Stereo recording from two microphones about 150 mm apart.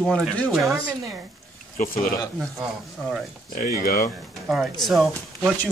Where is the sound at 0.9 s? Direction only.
20° right (ahead or behind).